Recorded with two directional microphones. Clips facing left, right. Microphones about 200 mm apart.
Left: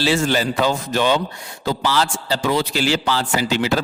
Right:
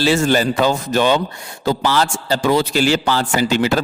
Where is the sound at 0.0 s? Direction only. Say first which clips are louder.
Right 3 dB; 45° right (ahead or behind).